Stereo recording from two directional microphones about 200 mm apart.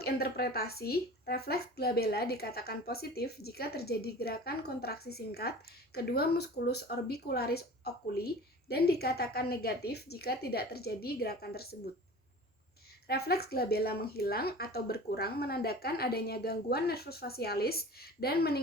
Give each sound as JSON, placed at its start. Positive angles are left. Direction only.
{"t": 0.0, "sound": "speech", "side_deg": 50}
{"t": 8.7, "sound": "speech", "side_deg": 50}
{"t": 13.1, "sound": "speech", "side_deg": 50}